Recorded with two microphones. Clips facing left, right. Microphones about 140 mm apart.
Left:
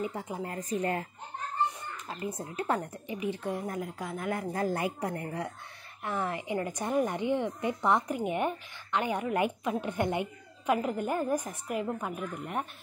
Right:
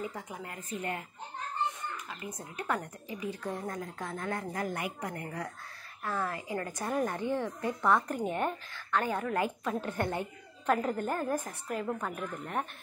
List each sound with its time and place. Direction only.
0.0 s speech: 30° left (ahead or behind)
2.0 s speech: 30° left (ahead or behind)
4.5 s a woman's voice: 30° left (ahead or behind); by 12.6 s 10° left (ahead or behind)